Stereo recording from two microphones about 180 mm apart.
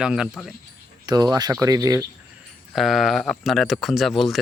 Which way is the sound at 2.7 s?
Centre (ahead or behind).